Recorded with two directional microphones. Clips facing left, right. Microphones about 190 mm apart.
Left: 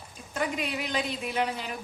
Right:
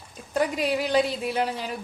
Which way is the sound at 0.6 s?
35° right (ahead or behind).